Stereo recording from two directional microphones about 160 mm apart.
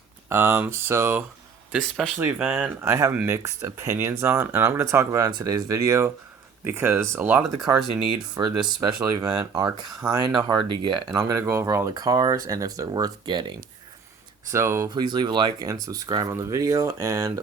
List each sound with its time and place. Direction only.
0.3 s speech: 15° right (ahead or behind)
1.7 s speech: centre (ahead or behind)
2.1 s speech: 10° right (ahead or behind)
8.4 s speech: 25° right (ahead or behind)
14.5 s speech: 15° right (ahead or behind)